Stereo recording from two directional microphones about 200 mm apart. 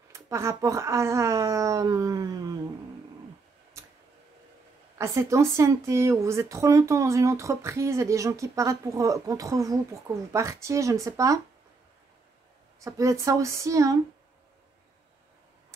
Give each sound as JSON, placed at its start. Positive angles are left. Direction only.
{"t": 0.1, "sound": "speech", "side_deg": -15}
{"t": 4.9, "sound": "speech", "side_deg": -15}
{"t": 12.8, "sound": "speech", "side_deg": -15}